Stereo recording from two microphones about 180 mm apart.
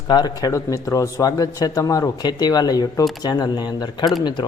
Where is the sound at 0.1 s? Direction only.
20° left (ahead or behind).